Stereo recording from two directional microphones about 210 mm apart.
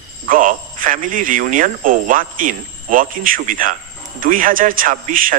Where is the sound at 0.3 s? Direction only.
40° right (ahead or behind).